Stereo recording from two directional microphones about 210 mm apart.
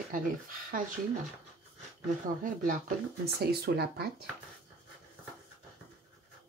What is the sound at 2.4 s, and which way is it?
Speech, 40° right (ahead or behind).